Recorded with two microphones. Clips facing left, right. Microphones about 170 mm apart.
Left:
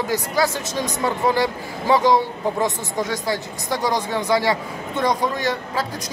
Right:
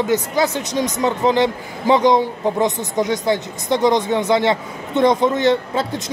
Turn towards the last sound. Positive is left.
turn(degrees=-25)  # may be behind; listen again after turning